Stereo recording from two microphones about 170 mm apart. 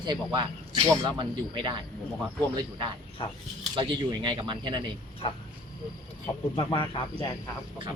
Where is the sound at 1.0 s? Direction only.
30° right (ahead or behind).